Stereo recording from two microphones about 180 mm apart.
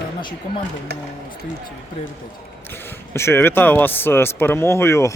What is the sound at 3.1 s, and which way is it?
Speech, 15° left (ahead or behind).